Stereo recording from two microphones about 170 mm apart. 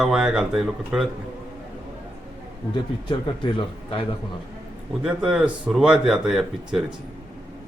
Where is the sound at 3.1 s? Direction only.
30° left (ahead or behind).